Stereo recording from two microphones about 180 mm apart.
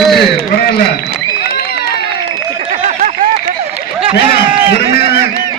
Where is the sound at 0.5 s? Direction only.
60° left (ahead or behind).